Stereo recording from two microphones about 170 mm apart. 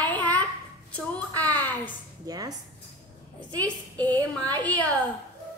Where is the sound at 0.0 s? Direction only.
10° left (ahead or behind).